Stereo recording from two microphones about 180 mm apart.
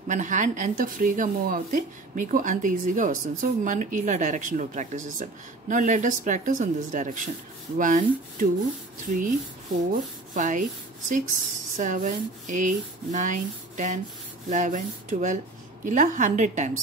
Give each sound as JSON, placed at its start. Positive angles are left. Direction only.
{"t": 0.1, "sound": "speech", "side_deg": -45}
{"t": 10.3, "sound": "speech", "side_deg": -45}